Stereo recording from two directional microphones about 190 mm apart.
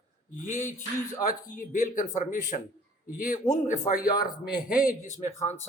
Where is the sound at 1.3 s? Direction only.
45° left (ahead or behind).